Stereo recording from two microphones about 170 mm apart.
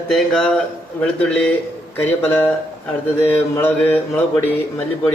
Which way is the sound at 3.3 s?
10° left (ahead or behind).